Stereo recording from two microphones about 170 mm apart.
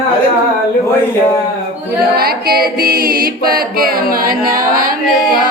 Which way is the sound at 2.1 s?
65° right (ahead or behind).